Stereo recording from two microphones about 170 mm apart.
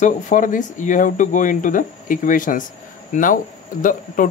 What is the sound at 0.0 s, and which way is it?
Speech, 50° left (ahead or behind).